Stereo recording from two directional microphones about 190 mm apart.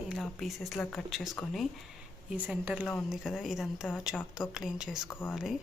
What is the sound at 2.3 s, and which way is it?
Speech, 10° right (ahead or behind).